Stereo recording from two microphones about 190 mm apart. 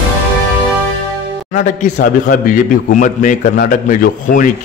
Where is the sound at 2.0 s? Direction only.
45° left (ahead or behind).